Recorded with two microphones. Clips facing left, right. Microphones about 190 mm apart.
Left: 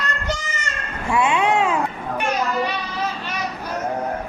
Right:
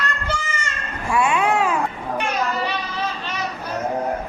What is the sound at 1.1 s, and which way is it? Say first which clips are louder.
Cat: even; 25° left (ahead or behind).